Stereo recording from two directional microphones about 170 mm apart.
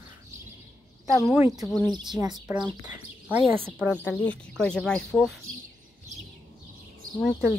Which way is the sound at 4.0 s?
10° left (ahead or behind).